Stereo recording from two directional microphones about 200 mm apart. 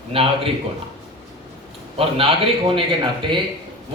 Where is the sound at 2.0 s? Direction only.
30° right (ahead or behind).